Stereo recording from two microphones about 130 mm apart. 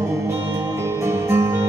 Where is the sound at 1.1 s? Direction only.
20° right (ahead or behind).